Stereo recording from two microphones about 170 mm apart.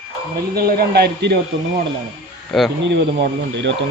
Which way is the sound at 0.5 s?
65° right (ahead or behind).